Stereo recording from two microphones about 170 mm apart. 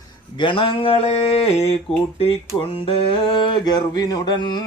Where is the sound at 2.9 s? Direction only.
30° left (ahead or behind).